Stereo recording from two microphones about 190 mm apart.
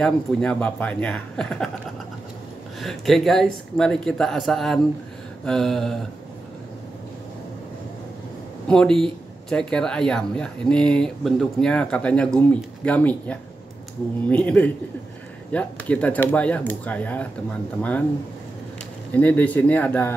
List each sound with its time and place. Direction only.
0.0 s speech: 5° left (ahead or behind)
2.8 s speech: centre (ahead or behind)
8.6 s speech: 5° left (ahead or behind)
19.1 s speech: 10° left (ahead or behind)